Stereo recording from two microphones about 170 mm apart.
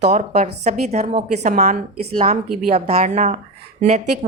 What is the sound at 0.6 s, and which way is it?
A woman's voice, 40° right (ahead or behind).